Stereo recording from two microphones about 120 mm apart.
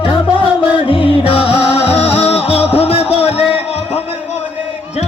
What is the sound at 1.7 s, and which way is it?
Music, 60° left (ahead or behind).